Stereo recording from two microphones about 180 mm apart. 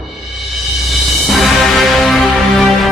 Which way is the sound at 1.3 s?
Centre (ahead or behind).